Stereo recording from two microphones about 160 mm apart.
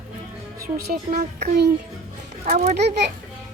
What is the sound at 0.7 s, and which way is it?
Speech, 75° right (ahead or behind).